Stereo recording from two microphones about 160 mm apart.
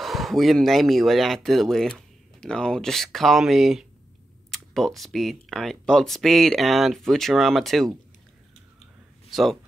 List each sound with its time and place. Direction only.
0.0 s speech: centre (ahead or behind)
9.3 s speech: centre (ahead or behind)